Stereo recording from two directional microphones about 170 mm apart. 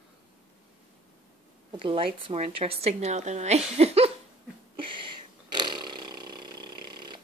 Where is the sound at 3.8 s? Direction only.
40° right (ahead or behind).